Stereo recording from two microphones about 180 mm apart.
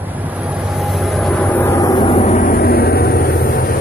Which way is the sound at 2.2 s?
45° left (ahead or behind).